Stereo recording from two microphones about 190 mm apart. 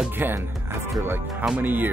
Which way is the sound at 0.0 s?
10° right (ahead or behind).